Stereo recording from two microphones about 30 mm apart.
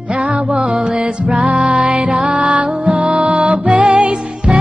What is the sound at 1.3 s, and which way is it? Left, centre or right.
Music, right.